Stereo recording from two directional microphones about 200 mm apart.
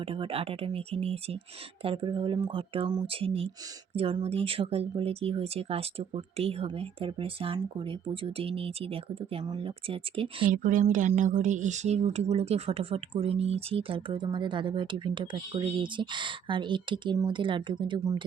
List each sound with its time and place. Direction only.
0.0 s speech: 25° right (ahead or behind)
10.5 s speech: 40° right (ahead or behind); by 18.3 s 20° right (ahead or behind)